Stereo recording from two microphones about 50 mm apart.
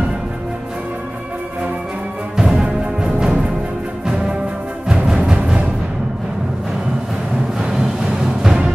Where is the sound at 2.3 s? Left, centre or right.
Centre.